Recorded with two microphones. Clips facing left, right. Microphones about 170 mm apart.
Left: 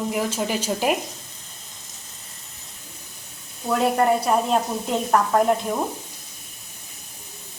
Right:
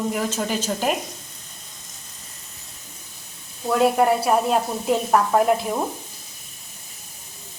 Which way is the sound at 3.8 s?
5° right (ahead or behind).